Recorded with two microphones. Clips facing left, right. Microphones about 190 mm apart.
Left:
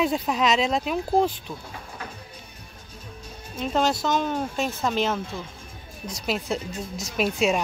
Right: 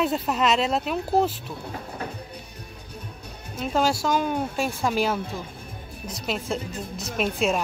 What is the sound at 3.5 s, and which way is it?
Speech, 5° right (ahead or behind).